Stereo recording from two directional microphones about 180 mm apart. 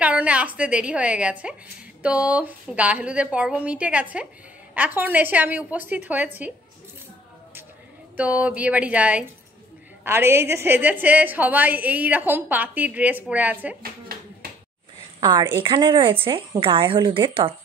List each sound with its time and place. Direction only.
0.0 s a woman's voice: 5° right (ahead or behind)
8.2 s a woman's voice: 10° right (ahead or behind)
15.1 s a woman's voice: 25° right (ahead or behind)